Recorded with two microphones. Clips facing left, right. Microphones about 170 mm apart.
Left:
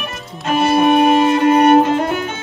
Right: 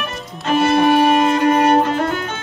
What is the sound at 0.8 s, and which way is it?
Music, 25° left (ahead or behind).